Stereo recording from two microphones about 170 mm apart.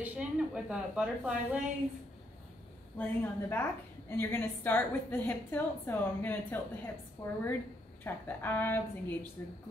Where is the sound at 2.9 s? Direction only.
10° left (ahead or behind).